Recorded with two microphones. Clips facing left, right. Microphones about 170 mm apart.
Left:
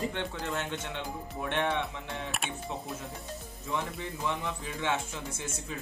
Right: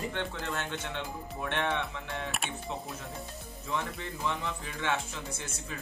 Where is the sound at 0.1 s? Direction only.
15° left (ahead or behind).